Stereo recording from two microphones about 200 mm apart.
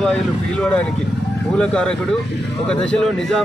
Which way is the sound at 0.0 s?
5° left (ahead or behind).